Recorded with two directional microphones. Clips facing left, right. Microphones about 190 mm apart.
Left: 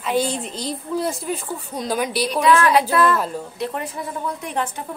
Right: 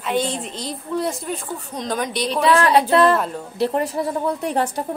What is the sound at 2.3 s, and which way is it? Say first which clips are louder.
A woman's voice: right 1 dB; 35° right (ahead or behind).